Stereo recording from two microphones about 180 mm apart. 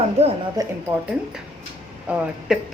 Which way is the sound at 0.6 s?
20° right (ahead or behind).